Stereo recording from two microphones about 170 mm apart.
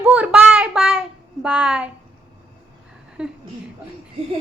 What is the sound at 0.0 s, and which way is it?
Child singing, 10° right (ahead or behind).